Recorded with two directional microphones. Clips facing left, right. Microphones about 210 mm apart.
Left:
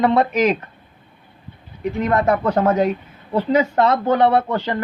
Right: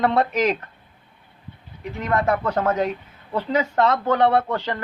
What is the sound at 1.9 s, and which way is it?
Speech, 20° left (ahead or behind).